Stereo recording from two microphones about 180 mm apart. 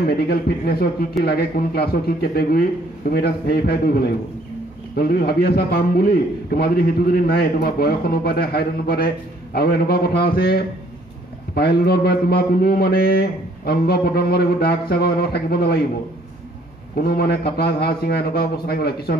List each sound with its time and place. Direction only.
0.0 s a man's voice: 60° left (ahead or behind)
16.9 s a man's voice: 60° left (ahead or behind)